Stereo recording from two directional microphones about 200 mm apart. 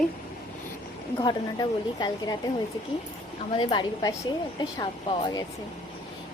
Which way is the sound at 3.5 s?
20° left (ahead or behind).